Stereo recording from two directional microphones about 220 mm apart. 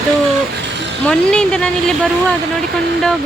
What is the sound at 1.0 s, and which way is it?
Speech, 5° left (ahead or behind).